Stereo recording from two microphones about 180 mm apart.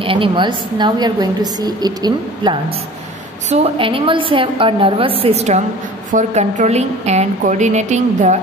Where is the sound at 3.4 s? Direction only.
35° right (ahead or behind).